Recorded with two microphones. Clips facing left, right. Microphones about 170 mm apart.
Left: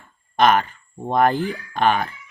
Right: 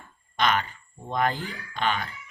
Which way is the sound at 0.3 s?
50° left (ahead or behind).